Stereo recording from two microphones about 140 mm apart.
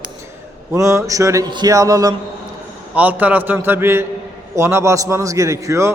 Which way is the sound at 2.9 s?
10° right (ahead or behind).